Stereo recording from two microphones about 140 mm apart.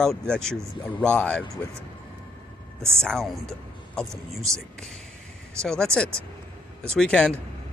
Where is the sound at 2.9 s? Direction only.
5° left (ahead or behind).